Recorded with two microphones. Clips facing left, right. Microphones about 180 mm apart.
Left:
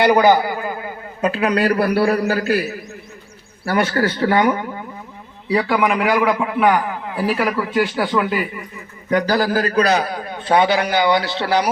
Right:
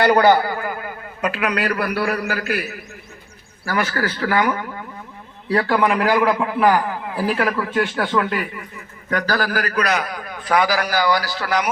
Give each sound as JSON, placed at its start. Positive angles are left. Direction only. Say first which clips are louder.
{"t": 0.0, "sound": "a man's voice", "louder": "left 1 dB", "side_deg": 15}
{"t": 5.5, "sound": "a man's voice", "louder": "left 1 dB", "side_deg": 0}
{"t": 9.0, "sound": "a man's voice", "louder": "left 4 dB", "side_deg": 20}